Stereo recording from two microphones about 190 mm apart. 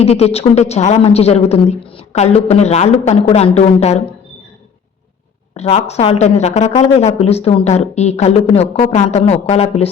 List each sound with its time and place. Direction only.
0.0 s speech: 35° left (ahead or behind)
5.5 s speech: 35° left (ahead or behind)